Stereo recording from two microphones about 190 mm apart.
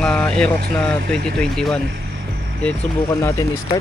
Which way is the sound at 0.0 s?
5° left (ahead or behind).